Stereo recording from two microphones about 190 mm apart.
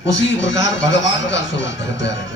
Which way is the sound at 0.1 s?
70° left (ahead or behind).